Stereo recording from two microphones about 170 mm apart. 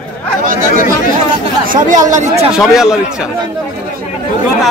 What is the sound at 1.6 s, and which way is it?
Speech, 50° right (ahead or behind).